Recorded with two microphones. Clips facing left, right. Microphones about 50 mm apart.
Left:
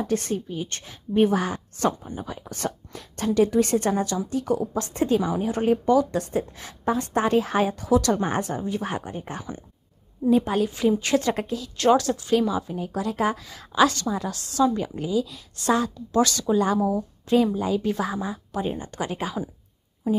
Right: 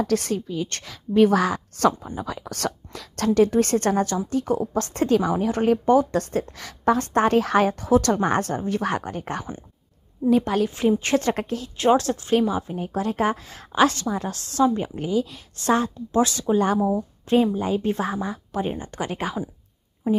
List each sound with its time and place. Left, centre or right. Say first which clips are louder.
0.0 s a woman's voice: right 3 dB; right
0.7 s speech: right 2 dB; right
3.3 s speech: right 2 dB; right
6.3 s a woman's voice: right 1 dB; right
10.8 s a woman's voice: right 1 dB; right
11.7 s a woman's voice: even; centre
12.0 s a woman's voice: right 1 dB; right
16.5 s a woman's voice: right 1 dB; right